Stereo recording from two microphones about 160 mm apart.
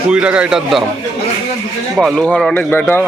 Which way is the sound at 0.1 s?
5° right (ahead or behind).